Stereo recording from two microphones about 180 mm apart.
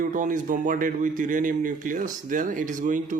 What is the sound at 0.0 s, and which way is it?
Speech, 50° right (ahead or behind).